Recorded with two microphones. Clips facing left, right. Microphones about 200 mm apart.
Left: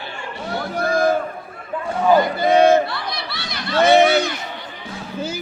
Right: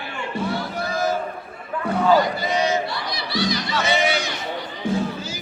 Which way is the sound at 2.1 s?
55° left (ahead or behind).